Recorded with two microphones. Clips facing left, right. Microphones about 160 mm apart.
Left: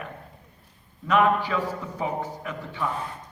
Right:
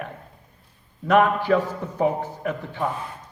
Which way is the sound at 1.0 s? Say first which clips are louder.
Right 3 dB; 55° right (ahead or behind).